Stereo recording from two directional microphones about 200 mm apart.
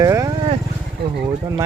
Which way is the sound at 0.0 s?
20° right (ahead or behind).